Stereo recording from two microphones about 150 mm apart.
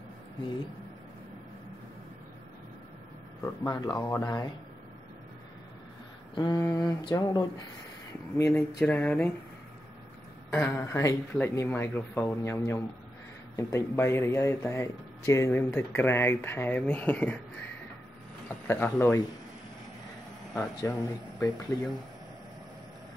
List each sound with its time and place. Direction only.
3.4 s speech: 25° left (ahead or behind)
6.3 s speech: 25° left (ahead or behind)
8.7 s speech: 10° left (ahead or behind)
10.5 s speech: 15° left (ahead or behind)
18.7 s speech: 15° left (ahead or behind)
20.9 s speech: 20° left (ahead or behind)